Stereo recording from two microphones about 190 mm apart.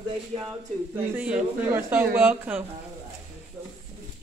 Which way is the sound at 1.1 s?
5° right (ahead or behind).